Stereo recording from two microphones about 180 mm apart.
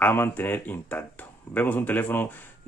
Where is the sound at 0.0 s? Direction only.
10° left (ahead or behind).